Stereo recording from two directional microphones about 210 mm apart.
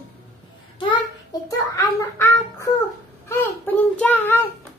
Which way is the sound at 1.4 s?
15° left (ahead or behind).